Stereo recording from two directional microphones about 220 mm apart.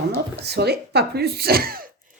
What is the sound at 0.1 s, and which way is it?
A woman's voice, 50° right (ahead or behind).